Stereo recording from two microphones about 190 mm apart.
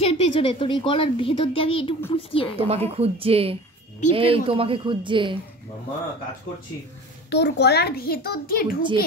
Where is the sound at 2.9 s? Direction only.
30° right (ahead or behind).